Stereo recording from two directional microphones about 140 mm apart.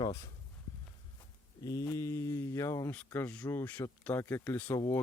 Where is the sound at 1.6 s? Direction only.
25° left (ahead or behind).